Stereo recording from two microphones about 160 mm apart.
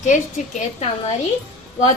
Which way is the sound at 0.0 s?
50° left (ahead or behind).